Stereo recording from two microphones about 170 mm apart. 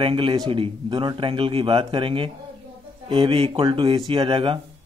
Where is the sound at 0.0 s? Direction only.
30° right (ahead or behind).